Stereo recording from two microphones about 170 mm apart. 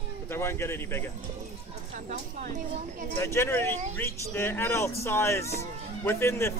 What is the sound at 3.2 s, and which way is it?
Speech, 15° left (ahead or behind).